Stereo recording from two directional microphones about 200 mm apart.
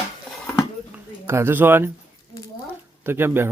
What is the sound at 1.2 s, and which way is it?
Speech, 10° right (ahead or behind).